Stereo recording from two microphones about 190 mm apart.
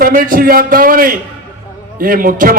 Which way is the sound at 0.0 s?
50° right (ahead or behind).